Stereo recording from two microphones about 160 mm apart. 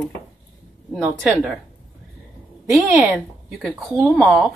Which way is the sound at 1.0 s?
5° right (ahead or behind).